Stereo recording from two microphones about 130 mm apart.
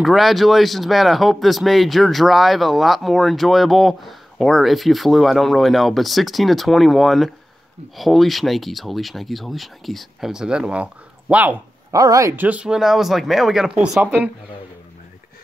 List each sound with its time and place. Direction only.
0.0 s speech: centre (ahead or behind)
11.9 s speech: 25° right (ahead or behind)
12.4 s speech: 10° right (ahead or behind)